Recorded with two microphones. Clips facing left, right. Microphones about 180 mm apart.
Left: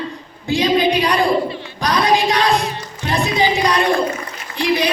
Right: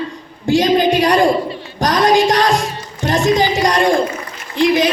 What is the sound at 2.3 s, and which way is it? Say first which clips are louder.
Music: right 2 dB; 45° right (ahead or behind).